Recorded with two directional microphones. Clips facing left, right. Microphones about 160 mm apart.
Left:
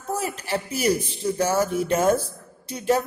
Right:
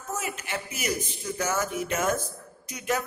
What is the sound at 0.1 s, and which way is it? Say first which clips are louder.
A man's voice: left 6 dB; 35° left (ahead or behind).